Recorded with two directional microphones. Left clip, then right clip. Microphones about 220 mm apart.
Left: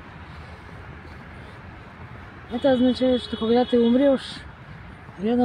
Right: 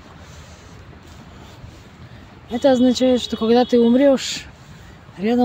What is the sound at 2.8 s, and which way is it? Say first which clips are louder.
Speech: right 4 dB; 35° right (ahead or behind).